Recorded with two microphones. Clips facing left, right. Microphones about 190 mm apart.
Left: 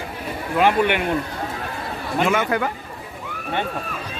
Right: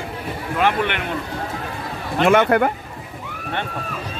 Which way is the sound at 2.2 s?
55° right (ahead or behind).